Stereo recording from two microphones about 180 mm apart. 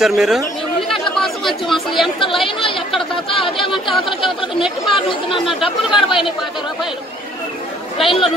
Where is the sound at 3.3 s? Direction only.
30° left (ahead or behind).